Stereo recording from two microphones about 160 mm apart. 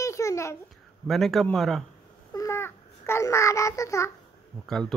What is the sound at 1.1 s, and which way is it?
Speech, centre (ahead or behind).